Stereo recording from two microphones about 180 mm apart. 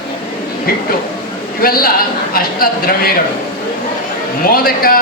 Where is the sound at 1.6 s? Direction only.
55° left (ahead or behind).